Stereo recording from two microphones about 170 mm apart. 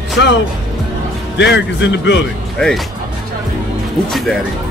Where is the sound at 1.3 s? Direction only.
90° left.